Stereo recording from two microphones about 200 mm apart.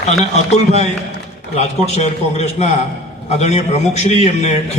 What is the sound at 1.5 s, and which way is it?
A man's voice, 35° left (ahead or behind).